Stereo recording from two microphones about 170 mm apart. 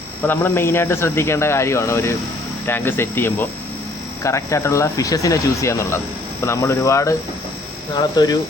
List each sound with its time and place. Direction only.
0.2 s speech: 10° left (ahead or behind)